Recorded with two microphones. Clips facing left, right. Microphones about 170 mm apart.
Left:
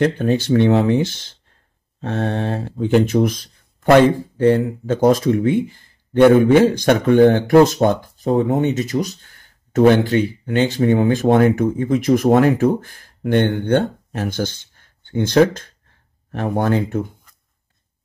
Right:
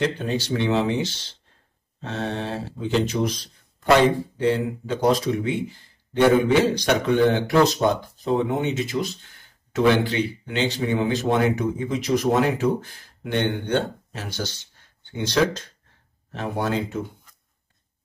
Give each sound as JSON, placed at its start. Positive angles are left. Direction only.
{"t": 0.0, "sound": "speech", "side_deg": 50}